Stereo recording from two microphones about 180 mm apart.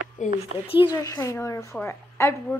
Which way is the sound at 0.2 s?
45° left (ahead or behind).